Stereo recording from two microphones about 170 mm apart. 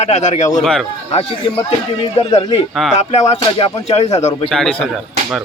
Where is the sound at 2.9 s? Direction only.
40° left (ahead or behind).